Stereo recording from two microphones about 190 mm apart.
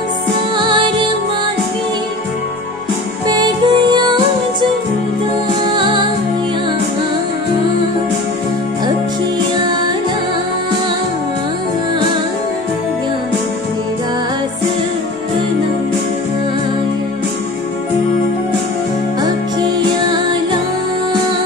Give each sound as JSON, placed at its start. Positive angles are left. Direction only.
{"t": 0.6, "sound": "music", "side_deg": -25}
{"t": 3.3, "sound": "music", "side_deg": -20}